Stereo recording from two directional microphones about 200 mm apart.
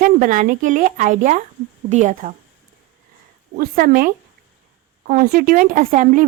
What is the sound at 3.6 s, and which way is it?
Speech, 45° right (ahead or behind).